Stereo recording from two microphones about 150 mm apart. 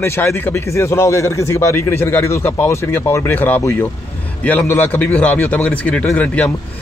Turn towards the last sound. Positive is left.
turn(degrees=10)  # may be behind; listen again after turning